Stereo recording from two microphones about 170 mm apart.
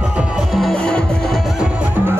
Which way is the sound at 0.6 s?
5° left (ahead or behind).